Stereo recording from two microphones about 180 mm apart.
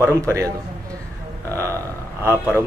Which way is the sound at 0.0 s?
15° right (ahead or behind).